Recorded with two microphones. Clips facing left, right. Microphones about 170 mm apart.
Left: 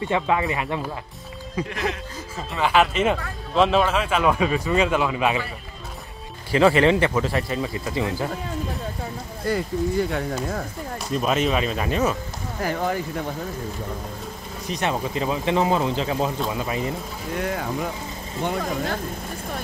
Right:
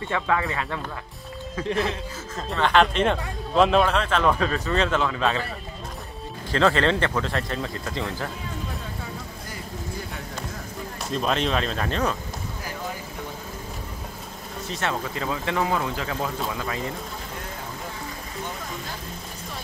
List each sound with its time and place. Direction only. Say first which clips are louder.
0.1 s speech: left 2 dB; 20° left (ahead or behind)
2.3 s speech: even; 5° left (ahead or behind)
6.5 s speech: left 4 dB; 10° left (ahead or behind)
11.1 s speech: left 2 dB; 5° left (ahead or behind)
12.6 s speech: left 11 dB; 65° left (ahead or behind)
14.7 s speech: left 4 dB; 15° left (ahead or behind)
17.4 s speech: left 10 dB; 90° left
18.4 s speech: left 11 dB; 70° left (ahead or behind)